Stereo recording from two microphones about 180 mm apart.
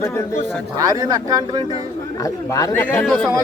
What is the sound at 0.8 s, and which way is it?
Speech, 20° right (ahead or behind).